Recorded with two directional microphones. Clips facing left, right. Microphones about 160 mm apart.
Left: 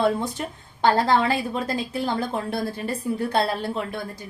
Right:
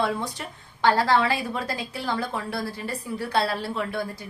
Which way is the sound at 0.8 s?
45° left (ahead or behind).